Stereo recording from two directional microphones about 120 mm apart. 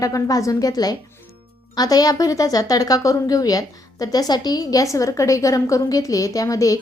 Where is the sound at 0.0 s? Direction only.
30° left (ahead or behind).